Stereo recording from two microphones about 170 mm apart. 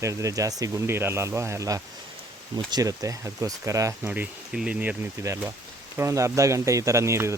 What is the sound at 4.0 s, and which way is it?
Speech, 5° right (ahead or behind).